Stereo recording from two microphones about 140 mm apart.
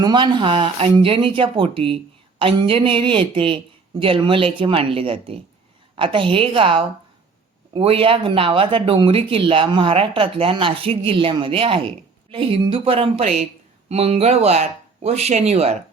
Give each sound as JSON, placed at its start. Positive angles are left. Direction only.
{"t": 0.0, "sound": "speech", "side_deg": -30}